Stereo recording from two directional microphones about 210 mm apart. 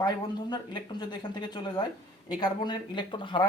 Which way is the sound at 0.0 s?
20° left (ahead or behind).